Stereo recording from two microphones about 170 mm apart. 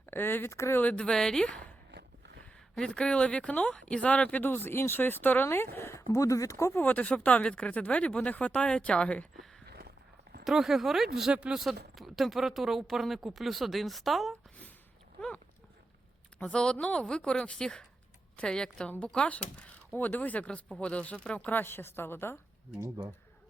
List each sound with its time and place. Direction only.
0.0 s speech: 10° left (ahead or behind)
1.9 s a sound: 85° right
2.7 s speech: 5° left (ahead or behind)
9.6 s a sound: 70° right (ahead or behind)
10.4 s speech: centre (ahead or behind)
16.4 s speech: 5° left (ahead or behind)
22.8 s speech: 20° right (ahead or behind)